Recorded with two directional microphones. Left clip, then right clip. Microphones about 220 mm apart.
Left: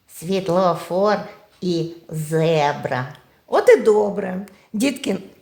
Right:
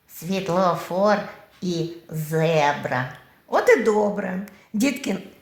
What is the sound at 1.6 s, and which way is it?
Speech, 65° left (ahead or behind).